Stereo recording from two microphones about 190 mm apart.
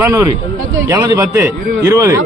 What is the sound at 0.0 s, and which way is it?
A man's voice, 15° right (ahead or behind).